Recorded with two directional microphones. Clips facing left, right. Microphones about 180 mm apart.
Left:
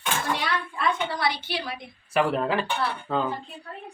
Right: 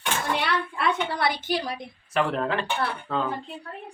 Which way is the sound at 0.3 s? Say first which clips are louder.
Right 2 dB; 65° right (ahead or behind).